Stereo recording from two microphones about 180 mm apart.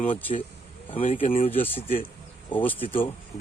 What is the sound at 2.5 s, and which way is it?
Speech, 10° left (ahead or behind).